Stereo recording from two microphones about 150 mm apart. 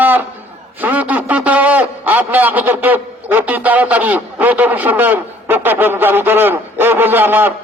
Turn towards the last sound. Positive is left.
turn(degrees=-15)  # may be behind; listen again after turning